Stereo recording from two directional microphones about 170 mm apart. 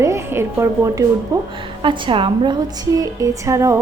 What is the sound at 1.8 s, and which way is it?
A woman's voice, 30° right (ahead or behind).